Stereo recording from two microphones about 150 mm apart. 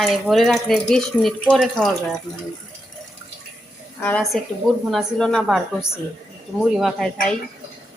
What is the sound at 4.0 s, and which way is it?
A woman's voice, 10° left (ahead or behind).